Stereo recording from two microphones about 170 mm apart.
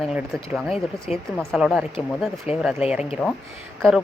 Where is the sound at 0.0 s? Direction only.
Centre (ahead or behind).